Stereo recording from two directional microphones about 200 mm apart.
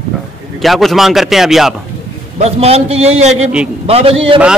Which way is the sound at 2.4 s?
30° right (ahead or behind).